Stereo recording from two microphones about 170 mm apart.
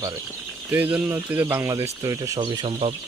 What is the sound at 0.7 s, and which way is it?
Speech, 10° right (ahead or behind).